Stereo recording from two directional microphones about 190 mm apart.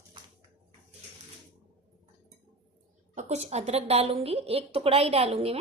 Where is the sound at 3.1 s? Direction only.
40° right (ahead or behind).